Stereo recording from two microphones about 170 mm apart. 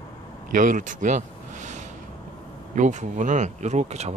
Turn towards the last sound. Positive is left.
turn(degrees=-40)  # may be behind; listen again after turning